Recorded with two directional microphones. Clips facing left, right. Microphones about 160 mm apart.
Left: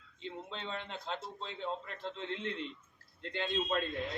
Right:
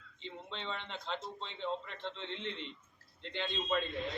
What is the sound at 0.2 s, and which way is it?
A man's voice, 5° left (ahead or behind).